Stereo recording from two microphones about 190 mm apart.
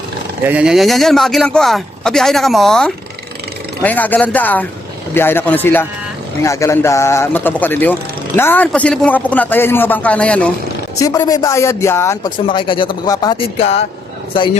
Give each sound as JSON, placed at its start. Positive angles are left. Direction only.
{"t": 0.4, "sound": "a man's voice", "side_deg": -5}
{"t": 11.0, "sound": "a man's voice", "side_deg": 20}
{"t": 12.5, "sound": "speech", "side_deg": 25}